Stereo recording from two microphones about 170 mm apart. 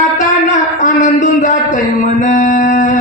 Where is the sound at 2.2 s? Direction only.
50° left (ahead or behind).